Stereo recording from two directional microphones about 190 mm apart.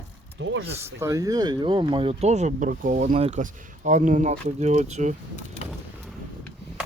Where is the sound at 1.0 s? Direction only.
15° right (ahead or behind); by 5.1 s 35° right (ahead or behind).